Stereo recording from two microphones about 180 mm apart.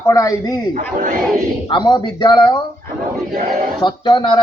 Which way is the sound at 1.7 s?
25° left (ahead or behind).